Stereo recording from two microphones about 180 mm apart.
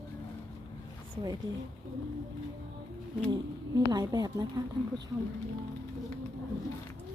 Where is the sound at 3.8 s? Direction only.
20° right (ahead or behind).